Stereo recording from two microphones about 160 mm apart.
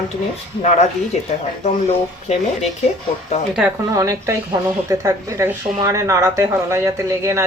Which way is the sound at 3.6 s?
15° right (ahead or behind).